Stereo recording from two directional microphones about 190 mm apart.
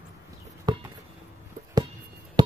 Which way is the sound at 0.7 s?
20° right (ahead or behind).